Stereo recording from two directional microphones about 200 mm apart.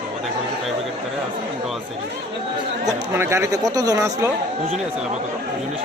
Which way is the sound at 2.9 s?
15° right (ahead or behind).